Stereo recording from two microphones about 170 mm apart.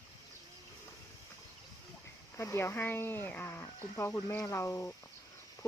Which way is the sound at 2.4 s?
15° left (ahead or behind).